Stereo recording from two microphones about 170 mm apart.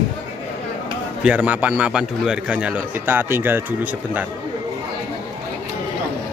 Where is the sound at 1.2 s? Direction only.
10° right (ahead or behind).